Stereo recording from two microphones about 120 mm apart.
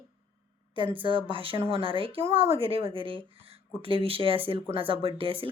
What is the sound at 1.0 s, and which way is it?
A woman's voice, 45° right (ahead or behind).